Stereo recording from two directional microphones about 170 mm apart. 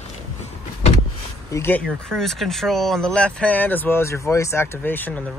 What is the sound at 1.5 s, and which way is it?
Speech, 10° left (ahead or behind).